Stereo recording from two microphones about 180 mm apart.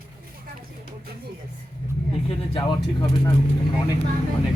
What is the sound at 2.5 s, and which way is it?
Speech, 20° left (ahead or behind).